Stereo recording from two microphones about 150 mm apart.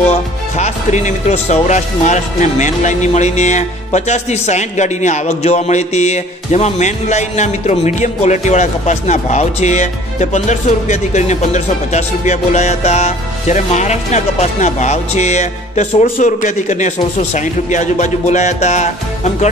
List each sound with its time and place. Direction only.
0.1 s speech: 50° left (ahead or behind)